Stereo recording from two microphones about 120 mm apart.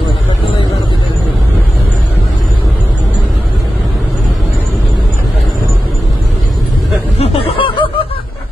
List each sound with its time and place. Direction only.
7.2 s snicker: 55° left (ahead or behind)